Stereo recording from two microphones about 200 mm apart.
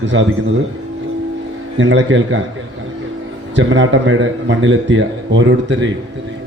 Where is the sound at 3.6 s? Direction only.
65° right (ahead or behind).